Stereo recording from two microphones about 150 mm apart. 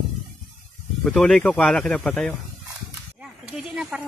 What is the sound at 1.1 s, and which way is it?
Speech, 5° left (ahead or behind).